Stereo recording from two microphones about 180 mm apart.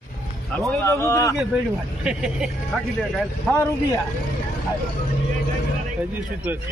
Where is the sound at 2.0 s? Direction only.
5° right (ahead or behind).